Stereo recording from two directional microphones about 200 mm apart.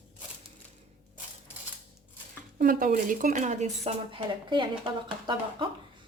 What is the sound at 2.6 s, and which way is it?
Speech, 45° right (ahead or behind).